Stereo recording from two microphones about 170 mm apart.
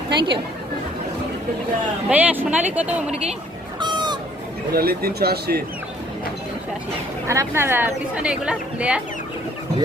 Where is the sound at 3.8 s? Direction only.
25° right (ahead or behind).